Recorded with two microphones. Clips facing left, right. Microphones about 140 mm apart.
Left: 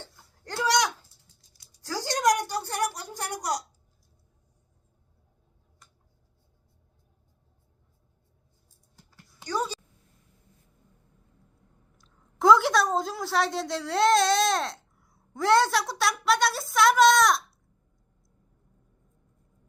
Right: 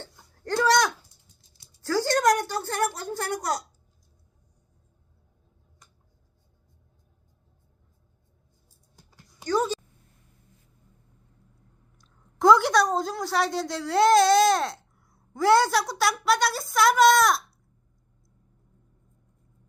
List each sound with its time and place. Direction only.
1.4 s dog: 25° right (ahead or behind)
2.1 s a woman's voice: 15° left (ahead or behind)
9.4 s a sound: 15° left (ahead or behind)
11.9 s a woman's voice: centre (ahead or behind)